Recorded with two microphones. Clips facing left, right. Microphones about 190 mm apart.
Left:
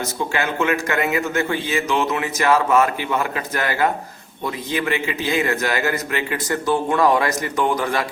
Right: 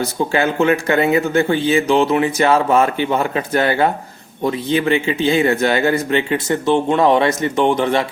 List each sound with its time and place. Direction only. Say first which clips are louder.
0.0 s a man's voice: right 6 dB; 35° right (ahead or behind)